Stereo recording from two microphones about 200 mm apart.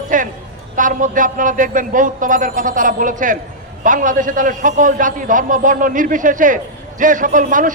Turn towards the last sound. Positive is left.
turn(degrees=-40)  # may be behind; listen again after turning